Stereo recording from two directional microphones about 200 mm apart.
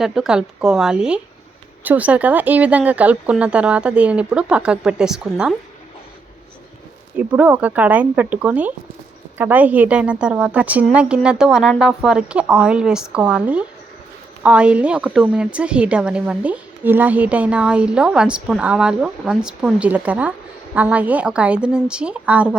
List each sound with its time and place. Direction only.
0.0 s a woman's voice: 5° right (ahead or behind)
7.3 s a woman's voice: 10° right (ahead or behind)